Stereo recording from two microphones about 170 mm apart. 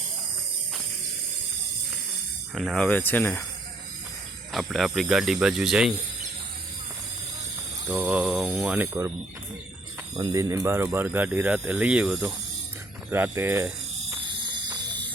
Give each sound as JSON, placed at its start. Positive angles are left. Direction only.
{"t": 2.6, "sound": "speech", "side_deg": 5}
{"t": 4.5, "sound": "speech", "side_deg": 0}
{"t": 7.9, "sound": "speech", "side_deg": -5}
{"t": 10.2, "sound": "speech", "side_deg": -20}